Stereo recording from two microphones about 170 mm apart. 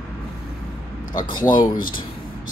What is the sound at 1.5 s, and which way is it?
Speech, 20° left (ahead or behind).